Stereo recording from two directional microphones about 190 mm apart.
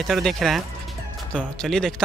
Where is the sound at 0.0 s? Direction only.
Centre (ahead or behind).